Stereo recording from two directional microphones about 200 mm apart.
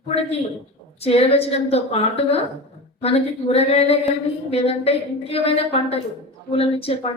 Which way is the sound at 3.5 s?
30° left (ahead or behind).